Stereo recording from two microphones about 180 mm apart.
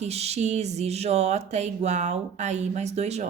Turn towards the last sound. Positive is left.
turn(degrees=-40)  # may be behind; listen again after turning